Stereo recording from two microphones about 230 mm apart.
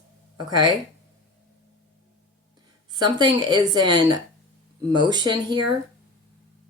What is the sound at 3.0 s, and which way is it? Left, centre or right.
Speech, centre.